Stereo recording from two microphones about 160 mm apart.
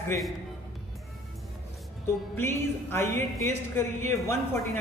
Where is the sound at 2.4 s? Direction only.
15° left (ahead or behind).